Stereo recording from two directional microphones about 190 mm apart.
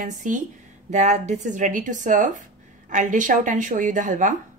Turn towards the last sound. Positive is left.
turn(degrees=-40)  # may be behind; listen again after turning